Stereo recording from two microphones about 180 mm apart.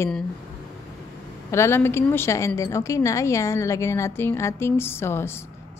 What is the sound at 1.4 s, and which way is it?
A woman's voice, 15° left (ahead or behind).